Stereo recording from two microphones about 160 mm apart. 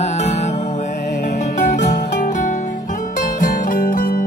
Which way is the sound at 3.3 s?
60° left (ahead or behind).